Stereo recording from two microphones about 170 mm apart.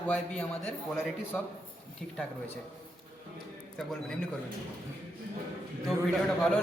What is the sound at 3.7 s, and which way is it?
Speech, 5° left (ahead or behind).